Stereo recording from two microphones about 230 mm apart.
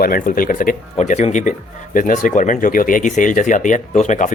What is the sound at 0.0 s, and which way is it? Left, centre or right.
Speech, left.